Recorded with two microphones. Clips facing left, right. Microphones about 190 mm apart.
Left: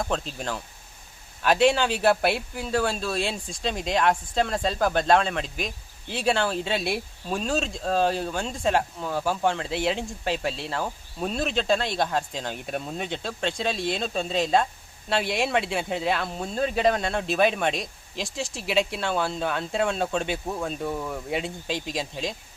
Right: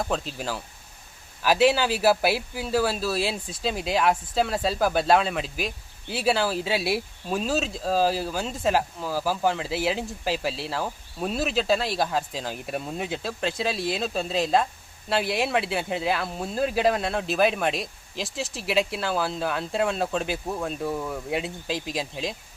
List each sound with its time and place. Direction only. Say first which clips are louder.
0.0 s speech: even; 5° right (ahead or behind)